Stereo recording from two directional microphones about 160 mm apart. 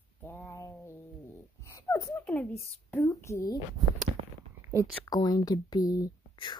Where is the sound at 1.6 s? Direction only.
20° left (ahead or behind).